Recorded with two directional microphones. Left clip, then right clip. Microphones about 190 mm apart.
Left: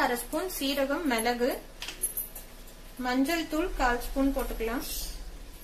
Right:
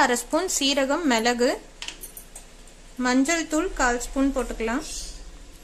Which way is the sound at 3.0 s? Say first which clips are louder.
Right 6 dB; 50° right (ahead or behind).